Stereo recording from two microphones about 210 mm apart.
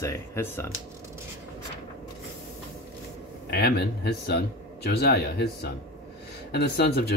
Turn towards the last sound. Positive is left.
turn(degrees=50)  # may be behind; listen again after turning